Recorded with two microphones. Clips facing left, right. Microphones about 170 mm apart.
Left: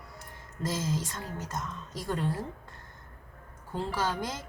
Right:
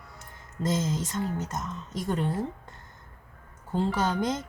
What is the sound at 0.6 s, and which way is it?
Speech, 20° right (ahead or behind).